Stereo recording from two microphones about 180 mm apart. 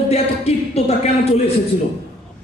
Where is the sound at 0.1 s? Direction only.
35° left (ahead or behind).